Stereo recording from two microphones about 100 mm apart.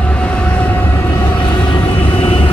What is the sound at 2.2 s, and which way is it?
Vehicle, 75° left (ahead or behind).